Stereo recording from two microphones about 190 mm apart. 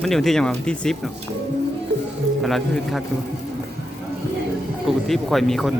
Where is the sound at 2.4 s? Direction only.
Centre (ahead or behind).